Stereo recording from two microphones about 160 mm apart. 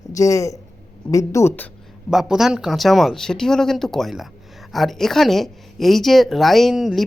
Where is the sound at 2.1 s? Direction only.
5° right (ahead or behind).